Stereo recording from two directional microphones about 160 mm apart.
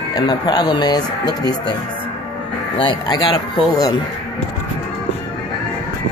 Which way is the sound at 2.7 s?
30° left (ahead or behind).